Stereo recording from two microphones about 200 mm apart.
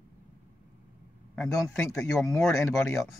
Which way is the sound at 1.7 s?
5° left (ahead or behind).